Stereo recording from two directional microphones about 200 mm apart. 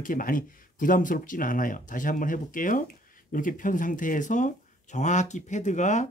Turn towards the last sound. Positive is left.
turn(degrees=35)  # may be behind; listen again after turning